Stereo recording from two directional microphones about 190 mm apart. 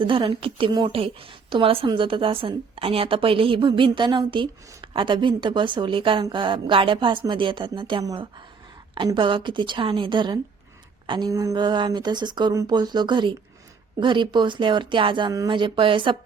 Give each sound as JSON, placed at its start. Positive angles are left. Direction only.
{"t": 0.0, "sound": "a woman's voice", "side_deg": -25}